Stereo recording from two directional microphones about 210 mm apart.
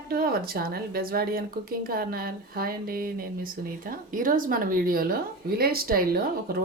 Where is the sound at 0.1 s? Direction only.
45° right (ahead or behind).